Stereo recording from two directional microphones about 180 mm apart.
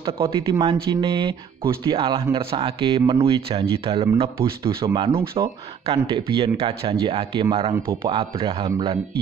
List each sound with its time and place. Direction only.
0.0 s speech: 25° right (ahead or behind)
4.4 s speech: 15° right (ahead or behind)
5.0 s speech: 30° right (ahead or behind)